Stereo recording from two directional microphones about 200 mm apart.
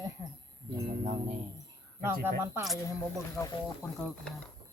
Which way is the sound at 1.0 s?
40° right (ahead or behind).